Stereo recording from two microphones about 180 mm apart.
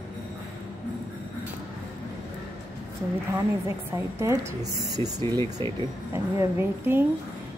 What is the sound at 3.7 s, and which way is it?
A woman's voice, 15° right (ahead or behind).